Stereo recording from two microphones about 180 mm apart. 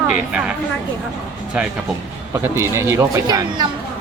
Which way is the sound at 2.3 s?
15° right (ahead or behind).